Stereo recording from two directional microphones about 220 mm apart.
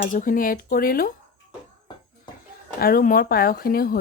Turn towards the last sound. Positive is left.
turn(degrees=40)  # may be behind; listen again after turning